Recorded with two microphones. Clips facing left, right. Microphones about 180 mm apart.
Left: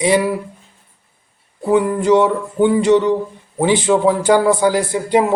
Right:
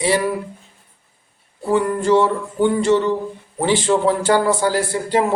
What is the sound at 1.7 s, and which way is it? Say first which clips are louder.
A man's voice: left 3 dB; 15° left (ahead or behind).